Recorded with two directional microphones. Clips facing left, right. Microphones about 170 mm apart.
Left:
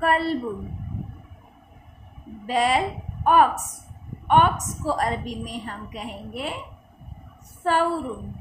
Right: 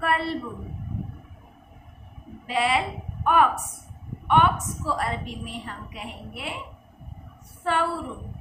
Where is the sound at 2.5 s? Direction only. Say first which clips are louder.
Left 3 dB; 40° left (ahead or behind).